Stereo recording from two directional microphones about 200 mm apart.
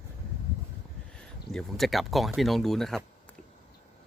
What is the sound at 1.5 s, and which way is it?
Speech, centre (ahead or behind).